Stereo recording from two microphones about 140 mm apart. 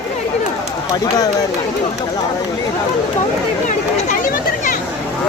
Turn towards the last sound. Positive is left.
turn(degrees=70)  # may be behind; listen again after turning